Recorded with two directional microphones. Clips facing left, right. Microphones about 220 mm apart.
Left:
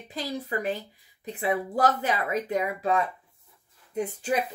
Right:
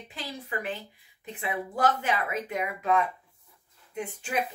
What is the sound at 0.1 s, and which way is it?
A woman's voice, 40° left (ahead or behind).